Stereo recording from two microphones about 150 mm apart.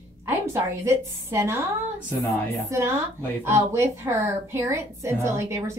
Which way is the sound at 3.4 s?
15° right (ahead or behind).